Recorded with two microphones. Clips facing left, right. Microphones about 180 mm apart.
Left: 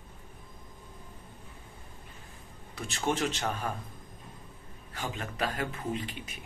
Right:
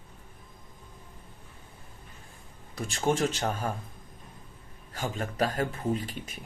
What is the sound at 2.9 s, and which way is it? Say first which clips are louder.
Speech: right 3 dB; 45° right (ahead or behind).